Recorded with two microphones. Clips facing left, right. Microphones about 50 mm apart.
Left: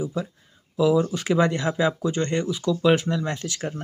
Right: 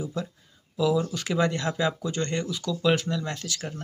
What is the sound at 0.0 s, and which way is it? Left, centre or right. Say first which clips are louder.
Speech: left 4 dB; centre.